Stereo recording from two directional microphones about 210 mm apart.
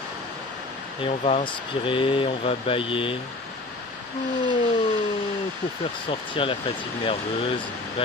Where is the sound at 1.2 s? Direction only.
25° left (ahead or behind).